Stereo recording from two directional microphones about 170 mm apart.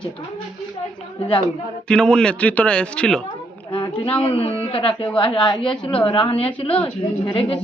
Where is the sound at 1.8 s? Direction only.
5° left (ahead or behind).